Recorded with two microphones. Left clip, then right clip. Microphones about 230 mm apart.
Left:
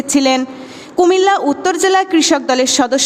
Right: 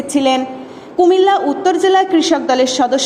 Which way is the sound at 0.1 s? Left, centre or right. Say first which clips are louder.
Left 1 dB; left.